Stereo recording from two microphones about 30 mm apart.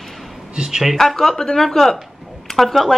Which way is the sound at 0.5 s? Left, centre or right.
Right.